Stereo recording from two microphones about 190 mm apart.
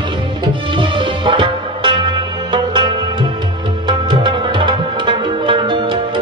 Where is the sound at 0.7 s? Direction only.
25° right (ahead or behind).